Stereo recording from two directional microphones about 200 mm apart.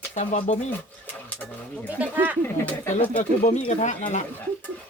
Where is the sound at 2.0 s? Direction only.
10° right (ahead or behind).